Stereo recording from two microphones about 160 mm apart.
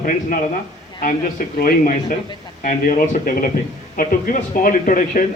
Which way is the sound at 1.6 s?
60° left (ahead or behind).